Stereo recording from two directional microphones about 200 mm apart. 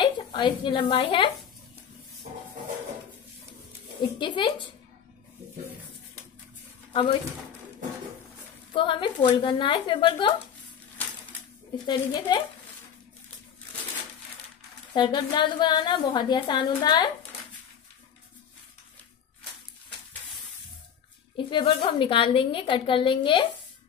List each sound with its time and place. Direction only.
0.0 s a woman's voice: 25° left (ahead or behind)
4.0 s a woman's voice: 25° left (ahead or behind)
8.7 s a woman's voice: 25° left (ahead or behind)
11.0 s a sound: 10° left (ahead or behind)
11.8 s a woman's voice: 20° left (ahead or behind)
15.0 s a woman's voice: 20° left (ahead or behind)
21.5 s a woman's voice: 25° left (ahead or behind)